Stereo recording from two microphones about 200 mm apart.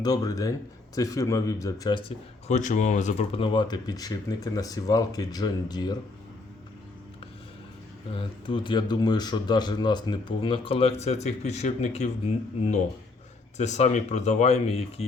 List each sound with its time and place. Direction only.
0.0 s speech: 20° left (ahead or behind)
2.5 s speech: 35° left (ahead or behind); by 6.0 s 20° left (ahead or behind)
8.1 s speech: 25° left (ahead or behind)
13.6 s speech: 35° left (ahead or behind)